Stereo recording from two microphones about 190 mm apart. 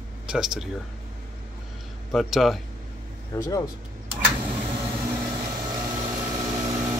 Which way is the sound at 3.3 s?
20° left (ahead or behind).